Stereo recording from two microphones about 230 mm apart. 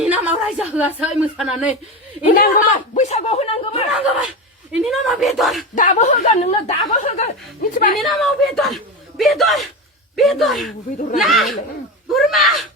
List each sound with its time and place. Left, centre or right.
0.0 s a woman's voice: centre
2.3 s speech: left
3.9 s speech: centre
5.7 s speech: left
7.9 s speech: centre